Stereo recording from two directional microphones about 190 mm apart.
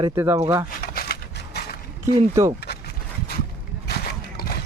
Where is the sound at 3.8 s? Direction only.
55° left (ahead or behind).